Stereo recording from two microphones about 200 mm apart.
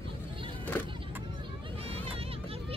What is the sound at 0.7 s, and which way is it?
Vehicle, 10° left (ahead or behind).